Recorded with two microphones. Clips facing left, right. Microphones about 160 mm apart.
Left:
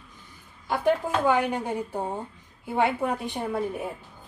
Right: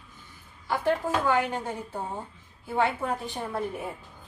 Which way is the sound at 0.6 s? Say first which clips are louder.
Left 2 dB; 15° left (ahead or behind).